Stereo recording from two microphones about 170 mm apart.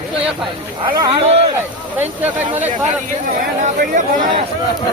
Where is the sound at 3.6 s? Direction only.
45° right (ahead or behind).